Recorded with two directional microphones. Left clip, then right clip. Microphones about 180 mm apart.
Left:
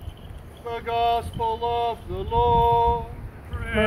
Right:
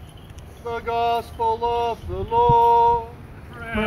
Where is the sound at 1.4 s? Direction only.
25° left (ahead or behind).